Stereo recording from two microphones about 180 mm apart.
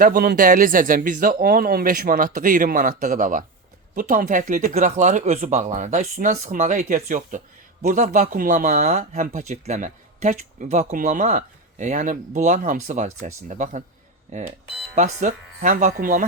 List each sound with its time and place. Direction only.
0.0 s speech: 55° right (ahead or behind)